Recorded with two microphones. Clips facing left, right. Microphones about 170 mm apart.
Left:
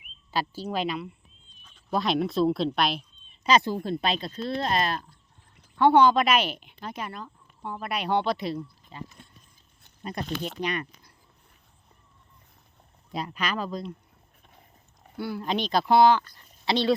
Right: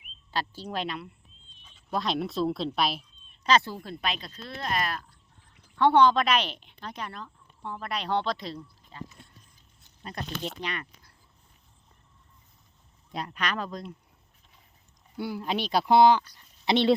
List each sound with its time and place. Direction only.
0.3 s speech: 5° left (ahead or behind)
3.4 s a woman's voice: 15° left (ahead or behind)
3.8 s speech: 30° left (ahead or behind)
5.7 s a woman's voice: 5° left (ahead or behind)
13.1 s speech: 5° left (ahead or behind)
15.1 s a sound: 65° left (ahead or behind)
15.4 s speech: 5° right (ahead or behind); by 16.9 s 25° right (ahead or behind)